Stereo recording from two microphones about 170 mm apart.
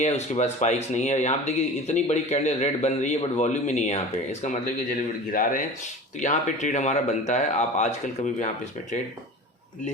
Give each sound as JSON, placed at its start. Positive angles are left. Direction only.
{"t": 0.0, "sound": "speech", "side_deg": 40}
{"t": 4.6, "sound": "speech", "side_deg": 55}